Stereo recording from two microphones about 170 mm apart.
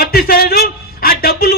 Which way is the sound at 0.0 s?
65° left (ahead or behind).